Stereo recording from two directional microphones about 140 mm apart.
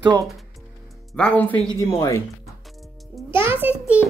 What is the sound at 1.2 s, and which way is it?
Speech, 10° left (ahead or behind).